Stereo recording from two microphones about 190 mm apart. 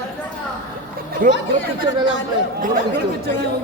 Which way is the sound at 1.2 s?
45° right (ahead or behind).